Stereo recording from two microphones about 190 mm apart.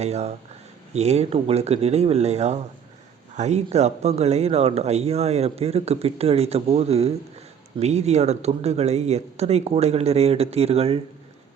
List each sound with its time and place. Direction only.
0.0 s speech: 35° right (ahead or behind)